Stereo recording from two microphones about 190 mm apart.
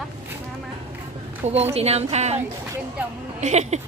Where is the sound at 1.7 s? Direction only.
35° right (ahead or behind).